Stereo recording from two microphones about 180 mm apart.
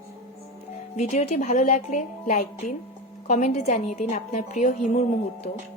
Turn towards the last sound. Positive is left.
turn(degrees=40)  # may be behind; listen again after turning